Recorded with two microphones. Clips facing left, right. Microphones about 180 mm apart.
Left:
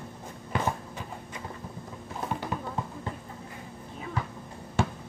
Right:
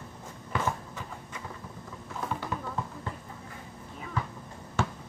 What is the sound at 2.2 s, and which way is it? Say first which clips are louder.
Clip-clop: left 1 dB; 20° left (ahead or behind).